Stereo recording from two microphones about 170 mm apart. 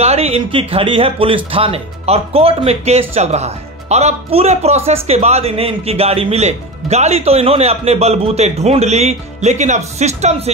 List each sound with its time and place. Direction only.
0.0 s a man's voice: 35° right (ahead or behind)